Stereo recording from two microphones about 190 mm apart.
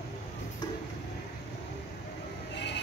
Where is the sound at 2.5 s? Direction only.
65° left (ahead or behind).